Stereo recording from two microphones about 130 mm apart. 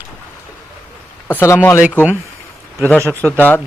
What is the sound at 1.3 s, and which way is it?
Speech, 20° left (ahead or behind).